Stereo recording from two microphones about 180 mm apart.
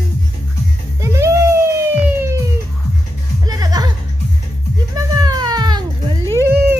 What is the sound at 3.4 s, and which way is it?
Music, 20° right (ahead or behind).